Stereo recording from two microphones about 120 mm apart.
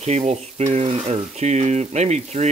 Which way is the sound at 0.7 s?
60° right (ahead or behind).